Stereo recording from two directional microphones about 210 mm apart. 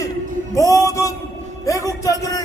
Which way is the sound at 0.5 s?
15° left (ahead or behind).